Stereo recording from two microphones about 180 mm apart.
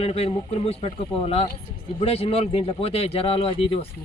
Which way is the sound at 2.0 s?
35° left (ahead or behind).